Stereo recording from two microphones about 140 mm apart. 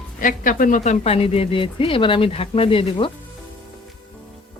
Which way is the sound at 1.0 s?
45° left (ahead or behind).